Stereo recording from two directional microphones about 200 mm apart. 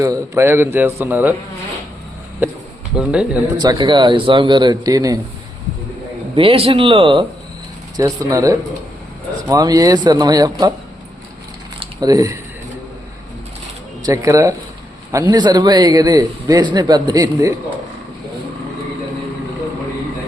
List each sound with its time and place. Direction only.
0.0 s a man's voice: 15° right (ahead or behind)
3.0 s speech: 5° right (ahead or behind)
3.6 s a man's voice: 20° right (ahead or behind)
6.3 s a man's voice: 30° right (ahead or behind)
11.8 s speech: 20° right (ahead or behind)
14.0 s a man's voice: 15° right (ahead or behind)